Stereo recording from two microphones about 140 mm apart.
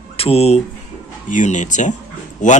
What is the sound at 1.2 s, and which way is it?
Speech, 65° left (ahead or behind).